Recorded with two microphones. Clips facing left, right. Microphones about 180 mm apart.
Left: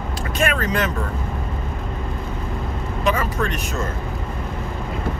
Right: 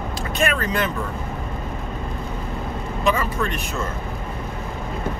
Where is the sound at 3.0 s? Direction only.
40° left (ahead or behind).